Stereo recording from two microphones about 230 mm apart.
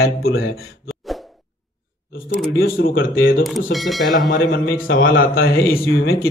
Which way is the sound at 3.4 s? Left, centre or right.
Centre.